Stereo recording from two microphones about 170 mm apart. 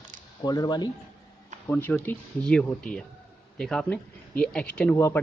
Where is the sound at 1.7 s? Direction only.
10° left (ahead or behind).